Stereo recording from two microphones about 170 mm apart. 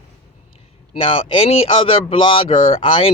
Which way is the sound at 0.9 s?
30° left (ahead or behind).